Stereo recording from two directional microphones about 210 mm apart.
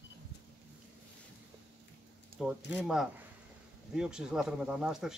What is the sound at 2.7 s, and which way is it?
Speech, 5° right (ahead or behind).